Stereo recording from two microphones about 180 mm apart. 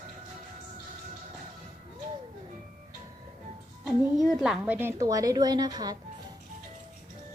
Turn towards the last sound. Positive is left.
turn(degrees=-20)  # may be behind; listen again after turning